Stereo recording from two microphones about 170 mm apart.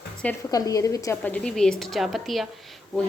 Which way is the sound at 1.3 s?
5° left (ahead or behind).